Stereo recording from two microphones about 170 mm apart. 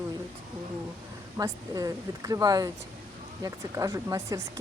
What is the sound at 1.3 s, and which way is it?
Speech, 20° right (ahead or behind).